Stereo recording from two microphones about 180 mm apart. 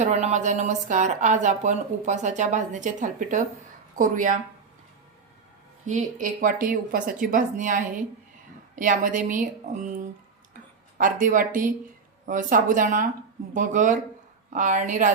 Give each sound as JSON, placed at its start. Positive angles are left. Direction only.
{"t": 0.0, "sound": "a woman's voice", "side_deg": -40}
{"t": 5.8, "sound": "a woman's voice", "side_deg": -45}